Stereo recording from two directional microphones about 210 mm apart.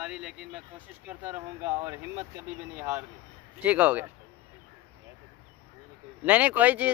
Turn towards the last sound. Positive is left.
turn(degrees=-5)  # may be behind; listen again after turning